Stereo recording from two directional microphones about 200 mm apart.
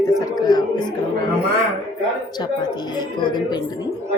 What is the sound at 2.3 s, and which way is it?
A woman's voice, 20° left (ahead or behind).